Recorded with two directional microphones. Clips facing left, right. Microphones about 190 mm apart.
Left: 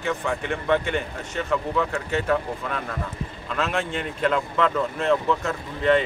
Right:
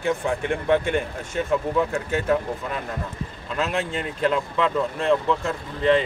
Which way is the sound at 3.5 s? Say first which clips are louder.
Right 1 dB; centre (ahead or behind).